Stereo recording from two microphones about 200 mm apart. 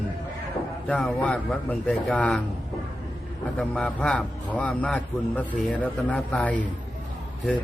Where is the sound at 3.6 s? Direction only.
5° left (ahead or behind).